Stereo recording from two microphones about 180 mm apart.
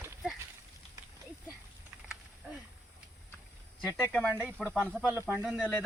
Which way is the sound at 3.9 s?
10° left (ahead or behind).